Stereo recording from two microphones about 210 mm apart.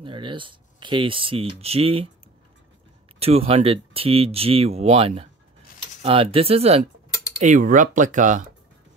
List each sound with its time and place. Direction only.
0.0 s speech: 25° right (ahead or behind)
3.2 s speech: 30° right (ahead or behind)